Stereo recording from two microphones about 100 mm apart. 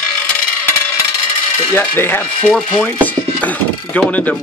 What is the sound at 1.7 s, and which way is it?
Ratchet, 20° left (ahead or behind).